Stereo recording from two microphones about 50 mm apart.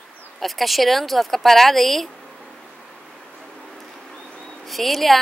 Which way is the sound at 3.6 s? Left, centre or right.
Centre.